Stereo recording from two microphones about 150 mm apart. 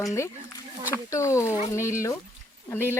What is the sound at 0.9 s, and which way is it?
Speech, 20° left (ahead or behind).